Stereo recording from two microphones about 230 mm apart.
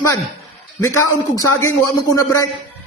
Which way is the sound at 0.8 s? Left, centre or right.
Centre.